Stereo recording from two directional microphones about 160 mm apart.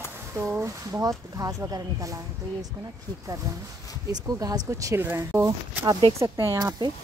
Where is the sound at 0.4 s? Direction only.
15° right (ahead or behind).